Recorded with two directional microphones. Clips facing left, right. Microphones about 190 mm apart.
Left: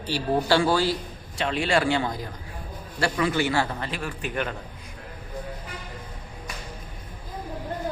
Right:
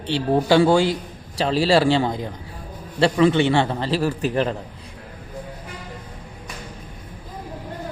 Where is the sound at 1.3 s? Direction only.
35° right (ahead or behind).